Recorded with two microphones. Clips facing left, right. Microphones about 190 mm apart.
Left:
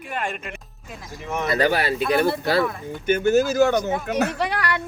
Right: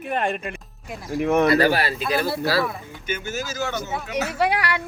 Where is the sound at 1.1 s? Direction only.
60° right (ahead or behind).